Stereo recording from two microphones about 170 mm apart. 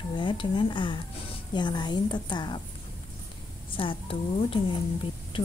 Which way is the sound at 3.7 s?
30° left (ahead or behind).